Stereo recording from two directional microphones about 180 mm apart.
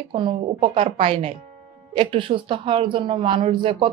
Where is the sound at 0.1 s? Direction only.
30° right (ahead or behind).